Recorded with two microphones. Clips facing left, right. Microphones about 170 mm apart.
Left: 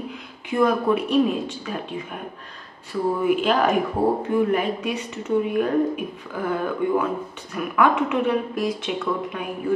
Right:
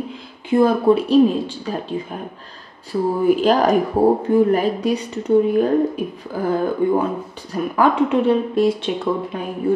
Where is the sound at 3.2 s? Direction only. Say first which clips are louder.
Right 5 dB; 35° right (ahead or behind).